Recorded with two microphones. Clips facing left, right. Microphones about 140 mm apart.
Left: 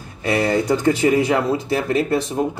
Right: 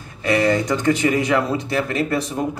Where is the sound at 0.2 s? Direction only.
30° left (ahead or behind).